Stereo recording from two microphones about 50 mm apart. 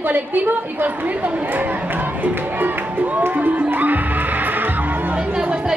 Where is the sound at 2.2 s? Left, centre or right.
Right.